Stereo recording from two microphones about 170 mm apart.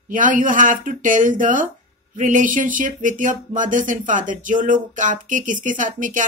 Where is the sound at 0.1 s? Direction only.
50° right (ahead or behind).